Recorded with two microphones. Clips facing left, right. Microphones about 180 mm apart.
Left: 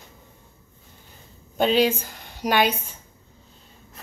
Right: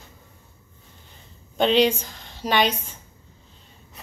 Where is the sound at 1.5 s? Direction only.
5° left (ahead or behind).